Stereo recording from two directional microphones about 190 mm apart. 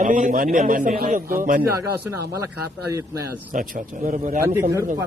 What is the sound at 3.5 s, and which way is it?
Speech, 45° right (ahead or behind).